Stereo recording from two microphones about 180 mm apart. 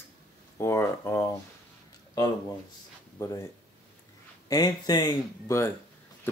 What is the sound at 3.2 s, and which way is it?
Speech, 20° left (ahead or behind).